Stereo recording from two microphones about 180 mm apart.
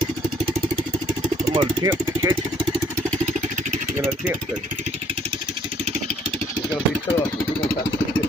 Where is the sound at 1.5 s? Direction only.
20° right (ahead or behind).